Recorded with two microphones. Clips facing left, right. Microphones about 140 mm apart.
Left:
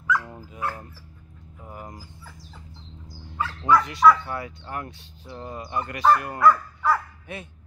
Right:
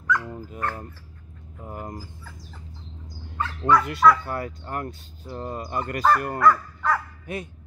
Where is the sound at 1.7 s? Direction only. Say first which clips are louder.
Right 5 dB; 45° right (ahead or behind).